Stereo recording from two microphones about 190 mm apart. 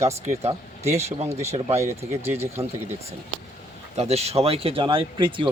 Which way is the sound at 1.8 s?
10° right (ahead or behind).